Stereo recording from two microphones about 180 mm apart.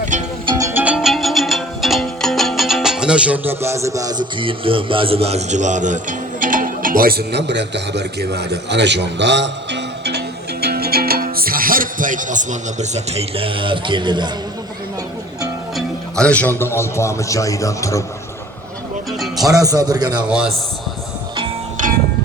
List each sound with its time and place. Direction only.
0.4 s music: 20° right (ahead or behind)
0.9 s music: centre (ahead or behind); by 14.3 s 25° right (ahead or behind)
15.7 s a man's voice: 5° left (ahead or behind)
19.2 s music: centre (ahead or behind)
19.5 s a man's voice: 20° right (ahead or behind)